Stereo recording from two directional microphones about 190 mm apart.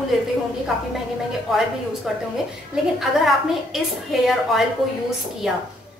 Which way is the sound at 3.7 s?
Centre (ahead or behind).